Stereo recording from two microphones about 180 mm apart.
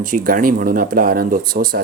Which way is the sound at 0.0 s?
50° right (ahead or behind).